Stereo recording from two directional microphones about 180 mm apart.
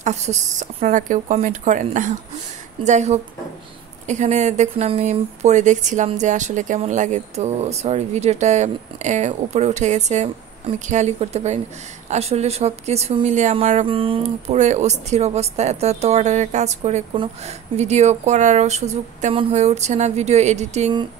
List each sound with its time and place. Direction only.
0.0 s a woman's voice: 40° right (ahead or behind)